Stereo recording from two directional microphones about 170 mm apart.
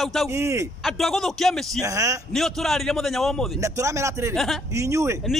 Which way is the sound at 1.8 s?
20° right (ahead or behind).